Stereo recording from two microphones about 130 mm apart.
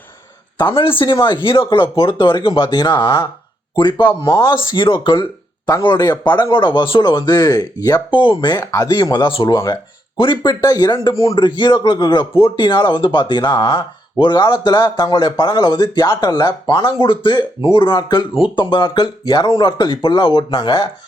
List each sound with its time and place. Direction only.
0.8 s speech: 40° left (ahead or behind)
11.3 s speech: 35° left (ahead or behind)